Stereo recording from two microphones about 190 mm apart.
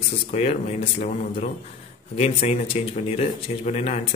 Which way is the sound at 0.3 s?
35° left (ahead or behind).